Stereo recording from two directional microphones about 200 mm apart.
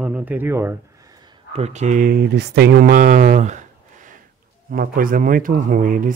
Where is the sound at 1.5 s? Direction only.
30° right (ahead or behind).